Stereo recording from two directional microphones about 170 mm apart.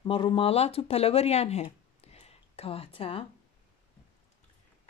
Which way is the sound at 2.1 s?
35° left (ahead or behind).